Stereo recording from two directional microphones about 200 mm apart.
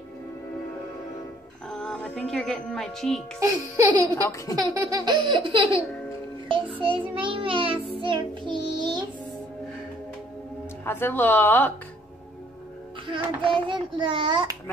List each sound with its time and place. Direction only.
1.7 s speech: centre (ahead or behind)
3.3 s a child's voice: 15° right (ahead or behind)
4.1 s a woman's voice: 15° left (ahead or behind)
4.6 s child singing: 20° right (ahead or behind)
10.9 s a woman's voice: 10° left (ahead or behind)
13.4 s child singing: 25° right (ahead or behind)